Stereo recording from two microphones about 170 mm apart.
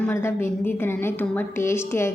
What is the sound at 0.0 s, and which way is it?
A woman's voice, 15° left (ahead or behind).